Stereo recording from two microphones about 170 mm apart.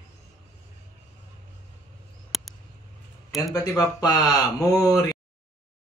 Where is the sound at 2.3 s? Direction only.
Centre (ahead or behind).